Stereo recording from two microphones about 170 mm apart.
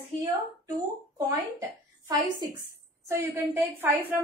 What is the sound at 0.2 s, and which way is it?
A woman's voice, 20° right (ahead or behind).